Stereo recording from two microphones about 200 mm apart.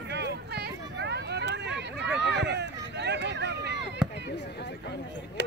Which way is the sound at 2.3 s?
60° right (ahead or behind).